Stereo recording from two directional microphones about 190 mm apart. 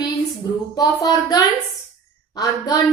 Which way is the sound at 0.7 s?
20° left (ahead or behind).